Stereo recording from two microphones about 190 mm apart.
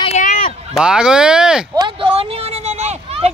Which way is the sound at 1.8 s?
30° right (ahead or behind).